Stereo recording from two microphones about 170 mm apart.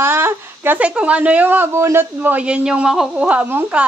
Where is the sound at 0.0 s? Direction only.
10° right (ahead or behind).